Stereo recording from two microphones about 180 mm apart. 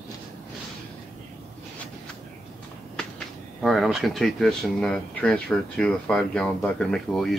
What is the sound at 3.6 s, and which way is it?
Speech, centre (ahead or behind).